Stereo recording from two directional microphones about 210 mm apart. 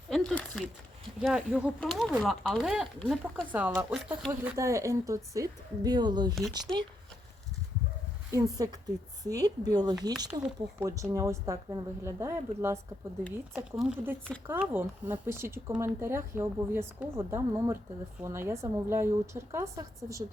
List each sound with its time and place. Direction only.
0.1 s speech: centre (ahead or behind); by 6.3 s 20° right (ahead or behind)
8.3 s speech: 15° right (ahead or behind)